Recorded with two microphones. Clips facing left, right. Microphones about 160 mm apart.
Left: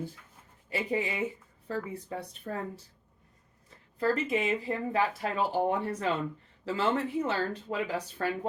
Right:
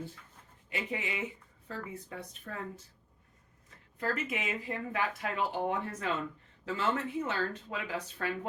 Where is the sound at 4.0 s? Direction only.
30° left (ahead or behind).